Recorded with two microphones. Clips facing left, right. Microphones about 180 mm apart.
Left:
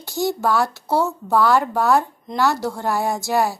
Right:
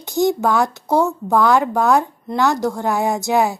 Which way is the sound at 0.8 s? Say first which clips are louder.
Right 3 dB; 15° right (ahead or behind).